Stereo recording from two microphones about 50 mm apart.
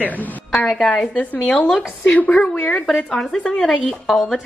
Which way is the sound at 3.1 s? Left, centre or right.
Centre.